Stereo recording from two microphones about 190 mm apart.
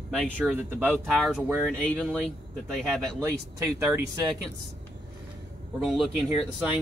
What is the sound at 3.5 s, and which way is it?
Speech, 15° right (ahead or behind).